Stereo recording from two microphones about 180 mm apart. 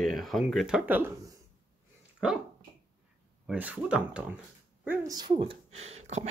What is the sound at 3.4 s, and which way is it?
Speech, 5° right (ahead or behind).